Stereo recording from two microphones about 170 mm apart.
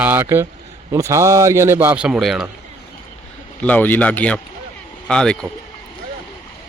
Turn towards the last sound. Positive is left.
turn(degrees=5)  # may be behind; listen again after turning